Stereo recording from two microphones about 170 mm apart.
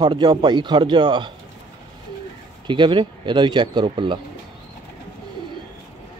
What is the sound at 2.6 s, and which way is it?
Speech, 30° right (ahead or behind).